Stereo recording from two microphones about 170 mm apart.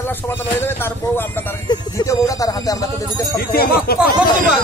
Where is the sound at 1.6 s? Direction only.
20° left (ahead or behind).